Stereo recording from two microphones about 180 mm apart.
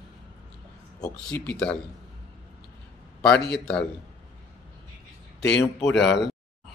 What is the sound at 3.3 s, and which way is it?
Speech, 70° left (ahead or behind).